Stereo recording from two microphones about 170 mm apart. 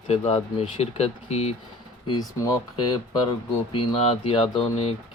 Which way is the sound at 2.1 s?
20° left (ahead or behind).